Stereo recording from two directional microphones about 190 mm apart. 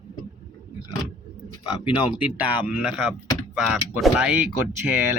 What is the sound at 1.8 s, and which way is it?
Speech, 25° left (ahead or behind).